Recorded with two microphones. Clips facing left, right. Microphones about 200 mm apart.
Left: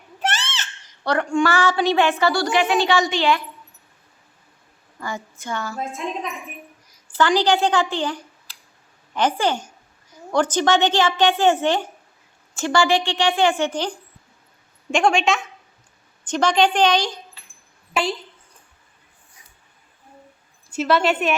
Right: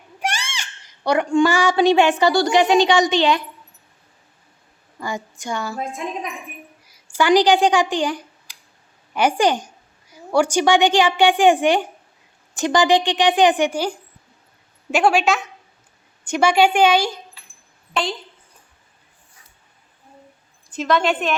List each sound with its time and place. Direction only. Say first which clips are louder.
0.2 s speech: left 1 dB; 10° right (ahead or behind)
4.9 s a woman's voice: right 3 dB; 15° right (ahead or behind)
7.1 s a woman's voice: right 3 dB; 10° right (ahead or behind)
20.7 s a woman's voice: even; 5° left (ahead or behind)